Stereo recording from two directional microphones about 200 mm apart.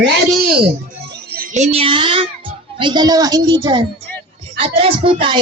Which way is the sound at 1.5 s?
30° right (ahead or behind).